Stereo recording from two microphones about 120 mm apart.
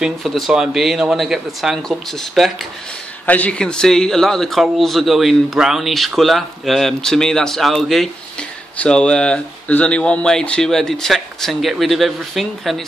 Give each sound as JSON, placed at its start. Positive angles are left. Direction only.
{"t": 0.0, "sound": "speech", "side_deg": 0}
{"t": 3.3, "sound": "speech", "side_deg": 10}